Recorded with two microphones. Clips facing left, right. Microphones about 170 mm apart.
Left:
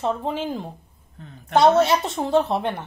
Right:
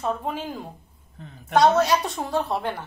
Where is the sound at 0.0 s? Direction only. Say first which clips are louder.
Left 3 dB; 25° left (ahead or behind).